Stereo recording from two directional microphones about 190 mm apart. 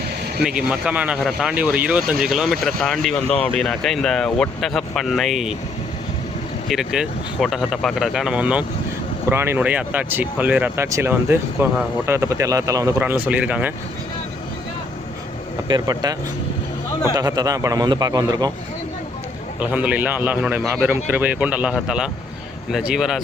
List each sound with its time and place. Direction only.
0.4 s speech: 5° right (ahead or behind)
6.7 s speech: 5° right (ahead or behind)
15.6 s a man's voice: 20° right (ahead or behind)
17.2 s a man's voice: 20° right (ahead or behind)
19.5 s speech: 10° right (ahead or behind)